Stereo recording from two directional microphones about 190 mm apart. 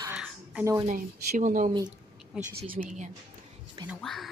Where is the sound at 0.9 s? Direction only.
40° right (ahead or behind).